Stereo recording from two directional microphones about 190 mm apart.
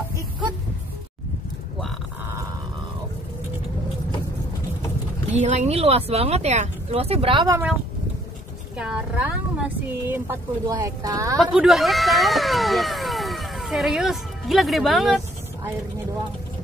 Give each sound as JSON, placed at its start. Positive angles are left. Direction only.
{"t": 5.3, "sound": "speech", "side_deg": -35}
{"t": 8.7, "sound": "speech", "side_deg": -5}
{"t": 11.5, "sound": "speech", "side_deg": 0}